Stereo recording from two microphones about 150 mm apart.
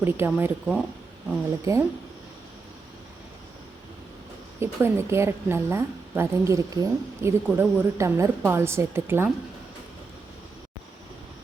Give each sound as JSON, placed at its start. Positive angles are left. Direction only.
{"t": 0.0, "sound": "a woman's voice", "side_deg": -15}
{"t": 1.7, "sound": "speech", "side_deg": -20}
{"t": 4.6, "sound": "a woman's voice", "side_deg": -15}